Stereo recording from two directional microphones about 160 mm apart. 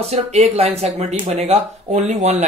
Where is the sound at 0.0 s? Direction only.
40° right (ahead or behind).